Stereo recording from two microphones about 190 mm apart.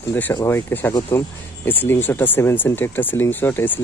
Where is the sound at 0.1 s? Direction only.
15° left (ahead or behind).